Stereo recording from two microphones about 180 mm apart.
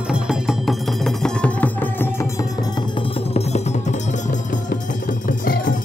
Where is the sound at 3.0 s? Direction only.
35° left (ahead or behind).